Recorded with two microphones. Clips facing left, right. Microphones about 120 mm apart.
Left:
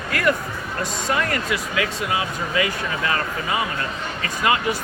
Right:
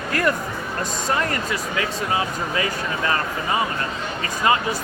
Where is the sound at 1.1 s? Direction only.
35° right (ahead or behind).